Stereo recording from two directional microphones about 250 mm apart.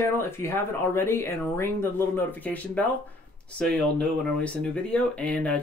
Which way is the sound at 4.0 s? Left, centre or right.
Centre.